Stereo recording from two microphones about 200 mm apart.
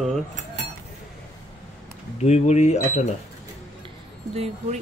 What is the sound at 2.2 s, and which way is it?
Speech, 35° left (ahead or behind).